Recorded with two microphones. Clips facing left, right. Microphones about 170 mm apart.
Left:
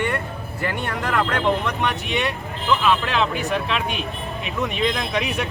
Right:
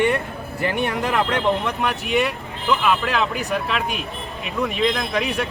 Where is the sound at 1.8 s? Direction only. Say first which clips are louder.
Right 3 dB; 5° right (ahead or behind).